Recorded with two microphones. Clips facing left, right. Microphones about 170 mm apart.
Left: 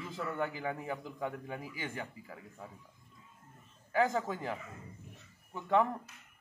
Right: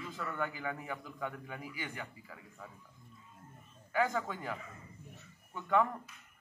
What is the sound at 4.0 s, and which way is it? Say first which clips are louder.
Speech: left 2 dB; 20° left (ahead or behind).